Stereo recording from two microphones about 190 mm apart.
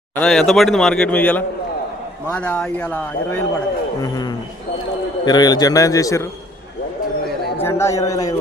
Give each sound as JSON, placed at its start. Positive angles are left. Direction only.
{"t": 0.2, "sound": "a man's voice", "side_deg": 0}
{"t": 4.0, "sound": "a man's voice", "side_deg": 20}
{"t": 7.6, "sound": "a man's voice", "side_deg": 15}